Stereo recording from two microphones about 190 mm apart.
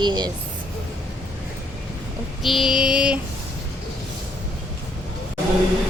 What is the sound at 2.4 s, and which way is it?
Child singing, centre (ahead or behind).